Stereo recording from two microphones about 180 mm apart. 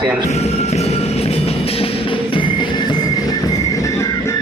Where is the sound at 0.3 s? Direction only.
35° left (ahead or behind); by 4.4 s 15° left (ahead or behind).